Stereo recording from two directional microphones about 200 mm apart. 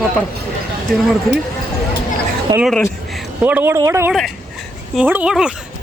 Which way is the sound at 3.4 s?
10° right (ahead or behind).